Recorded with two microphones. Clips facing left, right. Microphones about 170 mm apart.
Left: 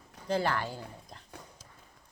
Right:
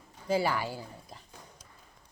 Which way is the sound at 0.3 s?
5° right (ahead or behind).